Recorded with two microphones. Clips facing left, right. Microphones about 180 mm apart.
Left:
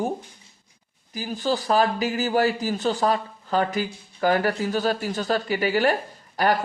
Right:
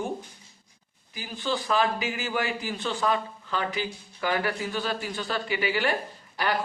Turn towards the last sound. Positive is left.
turn(degrees=45)  # may be behind; listen again after turning